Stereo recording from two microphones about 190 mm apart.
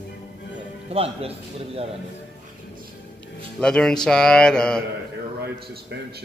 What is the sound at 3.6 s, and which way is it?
Speech, 5° left (ahead or behind).